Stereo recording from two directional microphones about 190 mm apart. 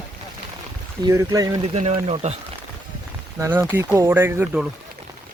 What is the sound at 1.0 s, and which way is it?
Speech, 20° right (ahead or behind).